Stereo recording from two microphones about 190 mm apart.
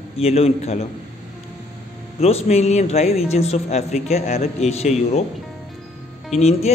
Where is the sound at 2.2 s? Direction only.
35° left (ahead or behind).